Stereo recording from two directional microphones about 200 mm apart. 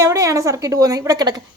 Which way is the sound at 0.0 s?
15° right (ahead or behind).